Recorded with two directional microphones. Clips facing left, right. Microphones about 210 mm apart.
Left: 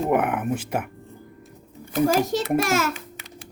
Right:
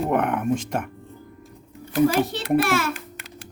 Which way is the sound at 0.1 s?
5° left (ahead or behind).